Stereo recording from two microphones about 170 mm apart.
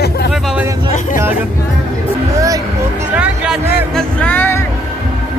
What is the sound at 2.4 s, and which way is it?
Music, 20° right (ahead or behind).